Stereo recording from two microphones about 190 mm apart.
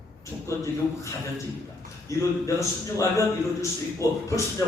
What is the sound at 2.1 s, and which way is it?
A man's voice, 15° left (ahead or behind).